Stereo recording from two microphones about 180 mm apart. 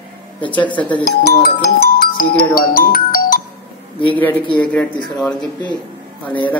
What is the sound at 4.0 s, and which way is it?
Speech, 10° left (ahead or behind).